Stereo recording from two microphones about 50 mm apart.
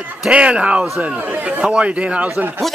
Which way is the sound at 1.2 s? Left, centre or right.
Right.